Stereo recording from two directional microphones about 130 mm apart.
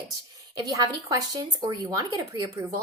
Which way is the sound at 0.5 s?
30° right (ahead or behind).